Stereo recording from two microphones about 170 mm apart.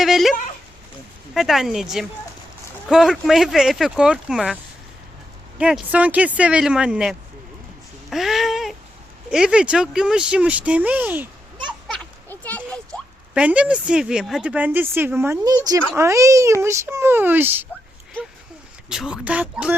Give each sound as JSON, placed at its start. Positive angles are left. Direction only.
{"t": 0.0, "sound": "speech", "side_deg": 0}
{"t": 5.5, "sound": "a woman's voice", "side_deg": -5}
{"t": 8.1, "sound": "a sound", "side_deg": 0}
{"t": 9.3, "sound": "a woman's voice", "side_deg": -5}
{"t": 11.9, "sound": "children playing", "side_deg": 10}
{"t": 13.3, "sound": "a woman's voice", "side_deg": -5}
{"t": 18.9, "sound": "a woman's voice", "side_deg": -5}